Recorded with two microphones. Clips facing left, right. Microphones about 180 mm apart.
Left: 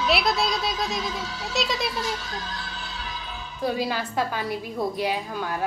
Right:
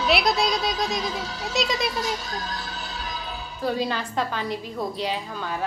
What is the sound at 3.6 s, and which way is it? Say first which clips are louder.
A woman's voice: even; 10° left (ahead or behind).